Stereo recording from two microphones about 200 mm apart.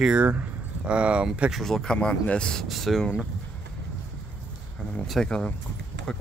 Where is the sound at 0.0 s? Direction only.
5° right (ahead or behind).